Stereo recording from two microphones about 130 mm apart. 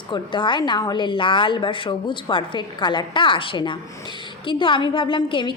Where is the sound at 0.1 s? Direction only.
40° left (ahead or behind).